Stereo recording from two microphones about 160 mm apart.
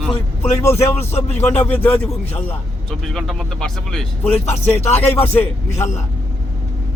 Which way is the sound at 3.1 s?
Centre (ahead or behind).